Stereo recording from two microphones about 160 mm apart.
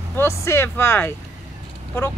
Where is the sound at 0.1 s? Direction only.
15° left (ahead or behind).